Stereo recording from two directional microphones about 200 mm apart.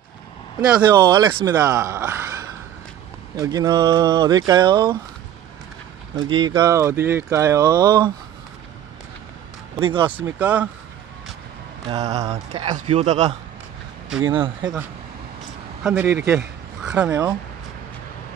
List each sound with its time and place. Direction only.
0.8 s speech: 20° right (ahead or behind)
6.2 s speech: 25° right (ahead or behind)
9.8 s speech: 25° right (ahead or behind)
10.1 s speech: 10° right (ahead or behind)
11.9 s speech: 35° right (ahead or behind)
14.2 s speech: 25° right (ahead or behind)
15.8 s a man's voice: 5° right (ahead or behind)
17.1 s speech: 20° right (ahead or behind)